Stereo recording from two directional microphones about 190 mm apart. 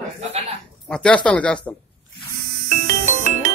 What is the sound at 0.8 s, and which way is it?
Speech, 5° left (ahead or behind).